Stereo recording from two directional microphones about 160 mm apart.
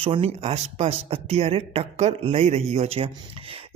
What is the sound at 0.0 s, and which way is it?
Speech, 35° right (ahead or behind).